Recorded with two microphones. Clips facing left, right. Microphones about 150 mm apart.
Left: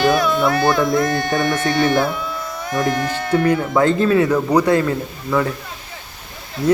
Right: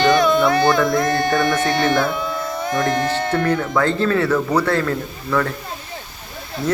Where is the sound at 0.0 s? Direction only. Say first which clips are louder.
Right 1 dB; 5° left (ahead or behind).